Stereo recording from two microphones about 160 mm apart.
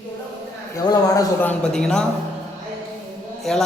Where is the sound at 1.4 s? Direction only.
5° left (ahead or behind).